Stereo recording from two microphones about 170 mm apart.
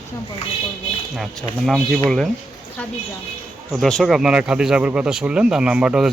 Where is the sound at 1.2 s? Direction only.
Centre (ahead or behind).